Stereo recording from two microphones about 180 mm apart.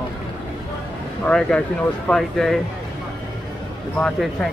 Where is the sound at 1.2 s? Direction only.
5° left (ahead or behind).